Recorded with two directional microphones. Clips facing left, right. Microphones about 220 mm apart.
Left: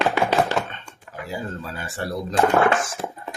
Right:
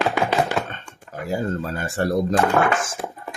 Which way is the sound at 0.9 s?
45° right (ahead or behind).